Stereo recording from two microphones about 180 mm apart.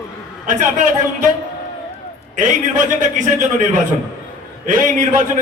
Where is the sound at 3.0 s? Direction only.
45° right (ahead or behind).